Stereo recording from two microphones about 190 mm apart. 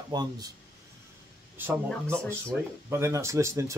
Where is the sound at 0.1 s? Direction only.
20° right (ahead or behind).